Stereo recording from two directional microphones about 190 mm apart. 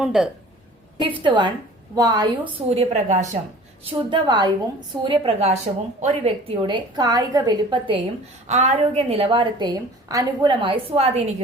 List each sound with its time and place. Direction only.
0.0 s speech: 5° right (ahead or behind)
0.9 s a woman's voice: 25° right (ahead or behind)
3.8 s a woman's voice: 25° right (ahead or behind)
8.4 s a woman's voice: 35° right (ahead or behind)